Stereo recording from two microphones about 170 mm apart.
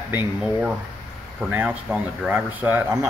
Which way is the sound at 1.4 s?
10° right (ahead or behind).